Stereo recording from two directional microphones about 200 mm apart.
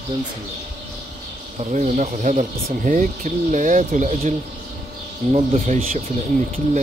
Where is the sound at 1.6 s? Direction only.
35° right (ahead or behind).